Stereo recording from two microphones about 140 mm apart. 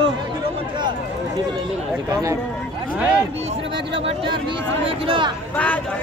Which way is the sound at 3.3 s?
50° right (ahead or behind).